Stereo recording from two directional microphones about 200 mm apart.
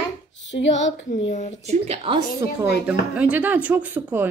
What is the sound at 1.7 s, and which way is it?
Speech, 30° right (ahead or behind).